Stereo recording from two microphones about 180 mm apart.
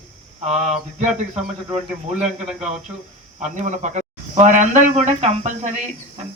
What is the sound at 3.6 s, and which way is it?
Speech, 45° right (ahead or behind).